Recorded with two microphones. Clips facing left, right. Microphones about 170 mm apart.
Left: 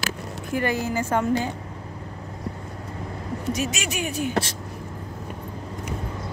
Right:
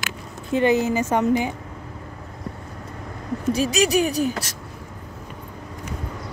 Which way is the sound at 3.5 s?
35° right (ahead or behind).